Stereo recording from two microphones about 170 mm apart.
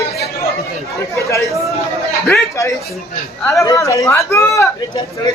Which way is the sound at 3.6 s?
20° left (ahead or behind).